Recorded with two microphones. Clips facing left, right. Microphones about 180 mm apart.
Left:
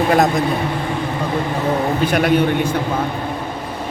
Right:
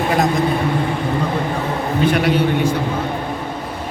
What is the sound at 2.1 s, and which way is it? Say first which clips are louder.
Speech: right 4 dB; 45° left (ahead or behind).